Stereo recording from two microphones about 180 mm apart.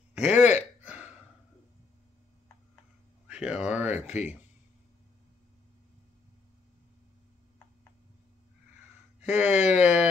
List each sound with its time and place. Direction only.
0.1 s a sound: 5° right (ahead or behind)
3.3 s speech: 5° right (ahead or behind)
4.0 s speech: 40° left (ahead or behind)
9.3 s speech: 40° left (ahead or behind)